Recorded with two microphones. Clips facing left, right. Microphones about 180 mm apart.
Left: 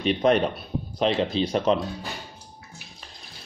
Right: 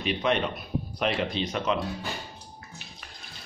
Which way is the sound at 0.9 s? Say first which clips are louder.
Left 6 dB; 25° left (ahead or behind).